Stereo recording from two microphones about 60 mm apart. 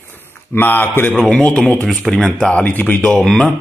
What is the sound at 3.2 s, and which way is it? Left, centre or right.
Speech, centre.